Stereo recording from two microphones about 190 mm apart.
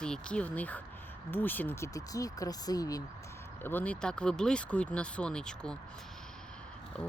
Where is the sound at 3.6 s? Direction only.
10° left (ahead or behind).